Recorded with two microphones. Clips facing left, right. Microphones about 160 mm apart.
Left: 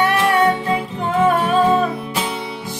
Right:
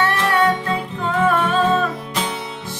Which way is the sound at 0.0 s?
15° left (ahead or behind).